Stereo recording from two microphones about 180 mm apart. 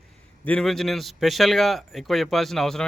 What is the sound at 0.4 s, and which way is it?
A man's voice, 5° left (ahead or behind).